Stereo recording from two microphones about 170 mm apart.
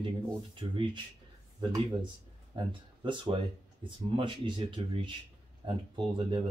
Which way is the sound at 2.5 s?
30° right (ahead or behind).